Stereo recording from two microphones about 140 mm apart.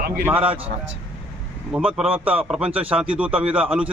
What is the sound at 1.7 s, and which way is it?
A man's voice, 5° right (ahead or behind).